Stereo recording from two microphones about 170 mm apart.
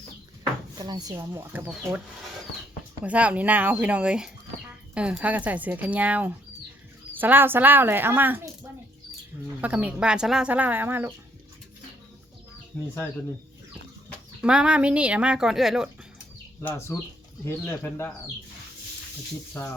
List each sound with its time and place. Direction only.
0.8 s speech: 20° right (ahead or behind)
3.0 s speech: 10° right (ahead or behind)
9.6 s speech: 10° right (ahead or behind)
12.7 s speech: 5° left (ahead or behind)
14.4 s speech: 5° right (ahead or behind)
16.6 s speech: 15° left (ahead or behind)